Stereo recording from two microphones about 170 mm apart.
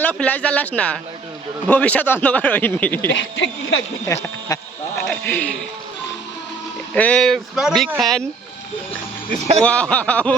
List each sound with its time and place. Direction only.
0.0 s speech: 10° left (ahead or behind)
3.1 s speech: 90° left
4.0 s speech: 20° left (ahead or behind)
6.9 s speech: 5° left (ahead or behind)
9.6 s speech: 5° left (ahead or behind)